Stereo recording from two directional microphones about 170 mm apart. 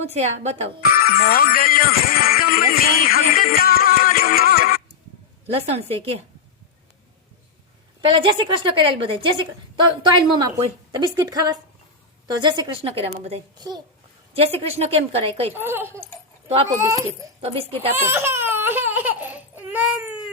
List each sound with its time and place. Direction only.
0.0 s a woman's voice: 40° right (ahead or behind)
0.8 s music: 60° left (ahead or behind)
5.5 s a woman's voice: 35° right (ahead or behind)
8.0 s a woman's voice: 30° right (ahead or behind)
14.6 s a woman's voice: 35° right (ahead or behind)
15.5 s a child's voice: 10° right (ahead or behind)
17.4 s a woman's voice: 35° right (ahead or behind)
17.9 s baby cry: 15° right (ahead or behind)